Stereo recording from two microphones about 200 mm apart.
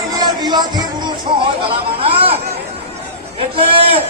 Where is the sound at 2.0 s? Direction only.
30° right (ahead or behind).